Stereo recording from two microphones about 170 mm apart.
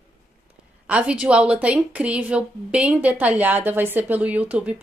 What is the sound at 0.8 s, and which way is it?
A woman's voice, 10° right (ahead or behind).